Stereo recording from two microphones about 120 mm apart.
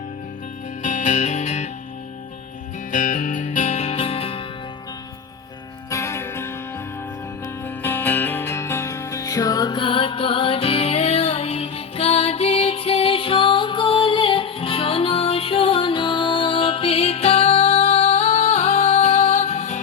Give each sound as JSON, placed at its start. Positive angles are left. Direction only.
{"t": 0.8, "sound": "music", "side_deg": 90}
{"t": 2.9, "sound": "music", "side_deg": 90}
{"t": 5.9, "sound": "music", "side_deg": 25}
{"t": 7.6, "sound": "music", "side_deg": 15}